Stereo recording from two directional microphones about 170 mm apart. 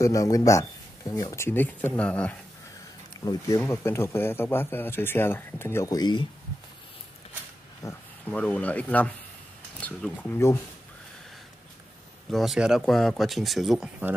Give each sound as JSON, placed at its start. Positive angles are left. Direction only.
{"t": 0.0, "sound": "speech", "side_deg": 20}
{"t": 7.8, "sound": "speech", "side_deg": 20}
{"t": 8.3, "sound": "speech", "side_deg": 5}
{"t": 12.3, "sound": "speech", "side_deg": 0}